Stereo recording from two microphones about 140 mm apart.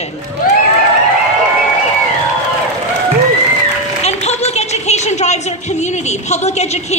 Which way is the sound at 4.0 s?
50° left (ahead or behind).